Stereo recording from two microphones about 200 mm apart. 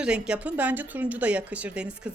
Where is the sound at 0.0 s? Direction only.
5° right (ahead or behind).